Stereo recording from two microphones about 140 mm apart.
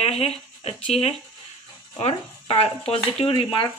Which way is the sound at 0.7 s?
45° left (ahead or behind).